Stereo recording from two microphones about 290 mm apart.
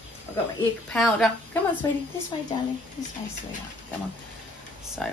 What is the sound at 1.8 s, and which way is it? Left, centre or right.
Speech, centre.